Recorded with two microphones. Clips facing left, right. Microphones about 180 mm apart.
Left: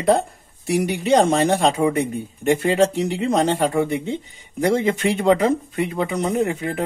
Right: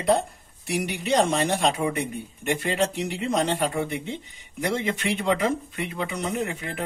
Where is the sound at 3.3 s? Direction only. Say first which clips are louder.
Left 5 dB; 45° left (ahead or behind).